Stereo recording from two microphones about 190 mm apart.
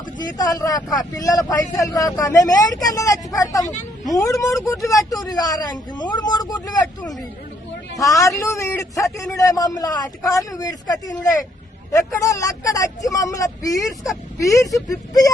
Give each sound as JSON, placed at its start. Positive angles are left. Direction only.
{"t": 0.3, "sound": "speech", "side_deg": 20}
{"t": 7.0, "sound": "speech", "side_deg": 0}
{"t": 8.4, "sound": "speech", "side_deg": 15}